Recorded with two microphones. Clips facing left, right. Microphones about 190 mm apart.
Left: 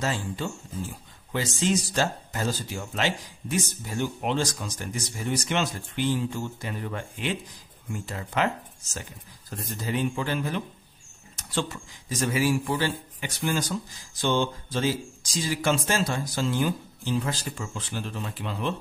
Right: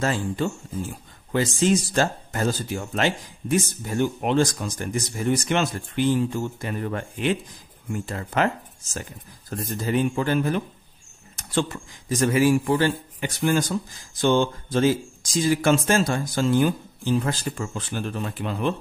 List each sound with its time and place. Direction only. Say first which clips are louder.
0.0 s speech: right 5 dB; 55° right (ahead or behind)
9.5 s speech: right 5 dB; 50° right (ahead or behind)